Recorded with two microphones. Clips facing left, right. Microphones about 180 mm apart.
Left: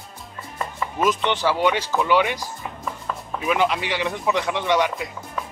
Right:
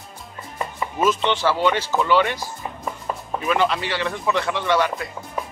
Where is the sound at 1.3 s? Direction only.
15° left (ahead or behind).